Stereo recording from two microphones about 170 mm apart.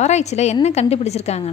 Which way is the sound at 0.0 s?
40° left (ahead or behind).